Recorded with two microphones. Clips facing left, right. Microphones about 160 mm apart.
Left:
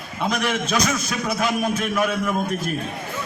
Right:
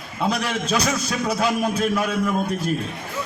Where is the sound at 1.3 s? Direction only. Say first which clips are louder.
Even; 30° right (ahead or behind).